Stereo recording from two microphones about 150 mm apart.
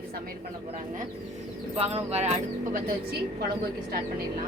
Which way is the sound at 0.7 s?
55° right (ahead or behind).